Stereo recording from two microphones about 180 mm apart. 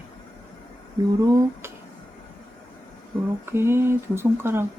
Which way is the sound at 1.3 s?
20° right (ahead or behind).